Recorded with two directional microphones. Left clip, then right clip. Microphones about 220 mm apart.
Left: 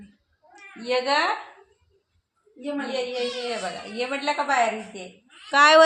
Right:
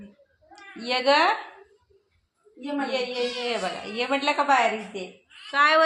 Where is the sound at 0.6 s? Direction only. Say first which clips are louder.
Left 2 dB; 25° right (ahead or behind).